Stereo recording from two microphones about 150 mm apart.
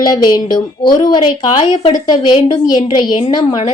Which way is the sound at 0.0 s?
25° left (ahead or behind).